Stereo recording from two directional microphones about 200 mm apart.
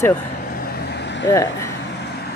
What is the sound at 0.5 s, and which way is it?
Vehicle, 50° left (ahead or behind).